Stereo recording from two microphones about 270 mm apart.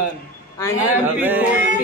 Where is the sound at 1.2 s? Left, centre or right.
Centre.